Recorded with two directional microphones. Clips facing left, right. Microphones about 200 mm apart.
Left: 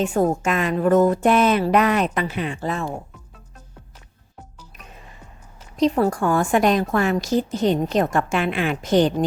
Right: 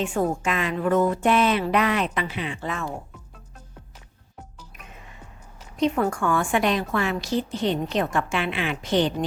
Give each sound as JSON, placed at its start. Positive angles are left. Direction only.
{"t": 0.0, "sound": "a woman's voice", "side_deg": 40}
{"t": 5.7, "sound": "a woman's voice", "side_deg": 35}